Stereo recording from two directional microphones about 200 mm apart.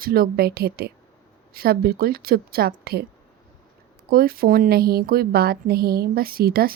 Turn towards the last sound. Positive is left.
turn(degrees=-50)  # may be behind; listen again after turning